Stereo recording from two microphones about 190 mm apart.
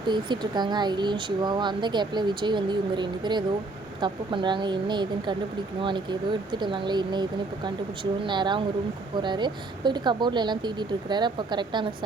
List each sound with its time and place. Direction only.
0.1 s speech: 25° right (ahead or behind)